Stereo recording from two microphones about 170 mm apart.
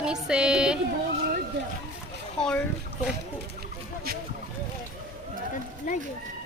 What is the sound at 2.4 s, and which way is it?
Speech, 5° left (ahead or behind).